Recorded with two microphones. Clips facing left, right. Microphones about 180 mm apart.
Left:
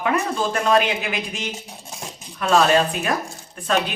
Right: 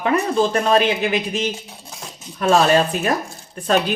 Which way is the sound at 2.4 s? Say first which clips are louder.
Right 2 dB; 40° right (ahead or behind).